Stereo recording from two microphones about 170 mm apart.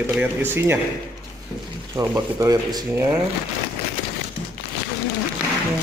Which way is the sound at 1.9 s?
20° right (ahead or behind).